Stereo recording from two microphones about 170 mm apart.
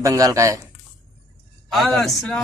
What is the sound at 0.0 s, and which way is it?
Speech, 20° right (ahead or behind).